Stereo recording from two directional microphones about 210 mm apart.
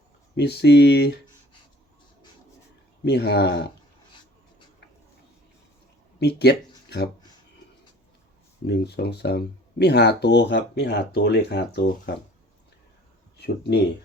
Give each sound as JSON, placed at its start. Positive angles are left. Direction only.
{"t": 0.3, "sound": "speech", "side_deg": 50}
{"t": 3.0, "sound": "speech", "side_deg": 50}
{"t": 6.1, "sound": "speech", "side_deg": 50}
{"t": 8.6, "sound": "speech", "side_deg": 50}